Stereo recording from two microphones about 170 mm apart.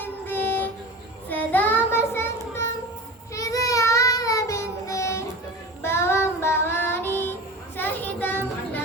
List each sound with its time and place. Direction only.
0.0 s train: 10° left (ahead or behind)
1.3 s child singing: 10° left (ahead or behind)